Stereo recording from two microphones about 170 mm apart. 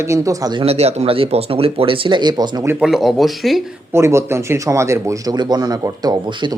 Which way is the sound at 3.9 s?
15° right (ahead or behind).